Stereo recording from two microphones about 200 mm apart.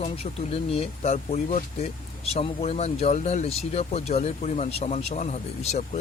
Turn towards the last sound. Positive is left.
turn(degrees=35)  # may be behind; listen again after turning